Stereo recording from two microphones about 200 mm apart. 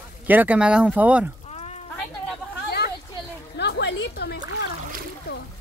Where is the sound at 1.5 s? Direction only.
30° left (ahead or behind).